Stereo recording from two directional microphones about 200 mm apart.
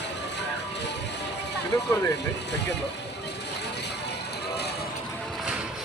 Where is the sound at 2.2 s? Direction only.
60° left (ahead or behind).